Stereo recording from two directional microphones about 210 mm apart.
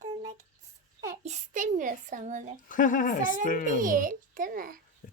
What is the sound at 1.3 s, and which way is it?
A child's voice, 35° right (ahead or behind).